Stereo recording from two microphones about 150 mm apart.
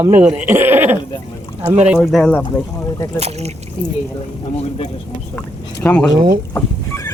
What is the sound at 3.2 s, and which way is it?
Speech, 45° right (ahead or behind).